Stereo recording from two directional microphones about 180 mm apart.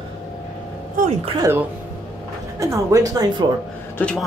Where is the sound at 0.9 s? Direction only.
40° right (ahead or behind).